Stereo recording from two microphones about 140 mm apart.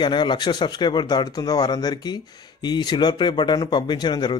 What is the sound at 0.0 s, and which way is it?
Speech, 35° left (ahead or behind).